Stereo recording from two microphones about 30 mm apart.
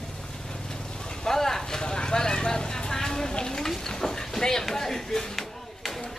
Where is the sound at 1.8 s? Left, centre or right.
Left.